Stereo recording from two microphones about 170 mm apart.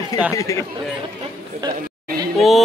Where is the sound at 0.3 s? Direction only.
20° left (ahead or behind).